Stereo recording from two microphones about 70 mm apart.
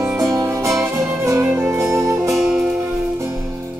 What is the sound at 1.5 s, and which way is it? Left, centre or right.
Music, right.